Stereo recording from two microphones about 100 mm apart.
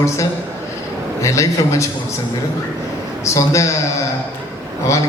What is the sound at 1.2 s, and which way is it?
Speech, 30° left (ahead or behind).